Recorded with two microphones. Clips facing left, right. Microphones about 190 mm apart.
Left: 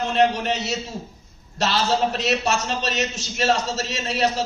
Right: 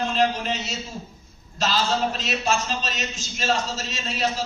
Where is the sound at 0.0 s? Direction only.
70° left (ahead or behind).